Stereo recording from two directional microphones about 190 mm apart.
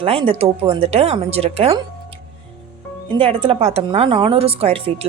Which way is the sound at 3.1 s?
30° right (ahead or behind).